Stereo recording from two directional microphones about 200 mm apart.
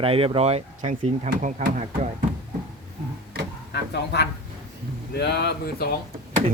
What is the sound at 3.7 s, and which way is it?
Speech, 55° left (ahead or behind).